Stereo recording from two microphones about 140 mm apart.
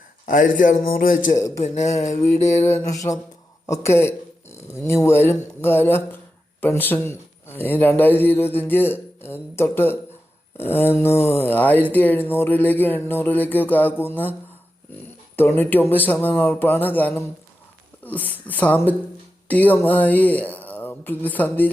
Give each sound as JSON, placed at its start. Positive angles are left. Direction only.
{"t": 0.3, "sound": "a man's voice", "side_deg": 75}
{"t": 1.4, "sound": "speech", "side_deg": 20}
{"t": 1.6, "sound": "a sound", "side_deg": 55}
{"t": 2.9, "sound": "speech", "side_deg": 25}
{"t": 15.4, "sound": "speech", "side_deg": 15}